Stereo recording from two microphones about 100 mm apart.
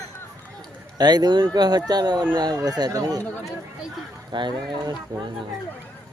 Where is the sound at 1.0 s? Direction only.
45° right (ahead or behind).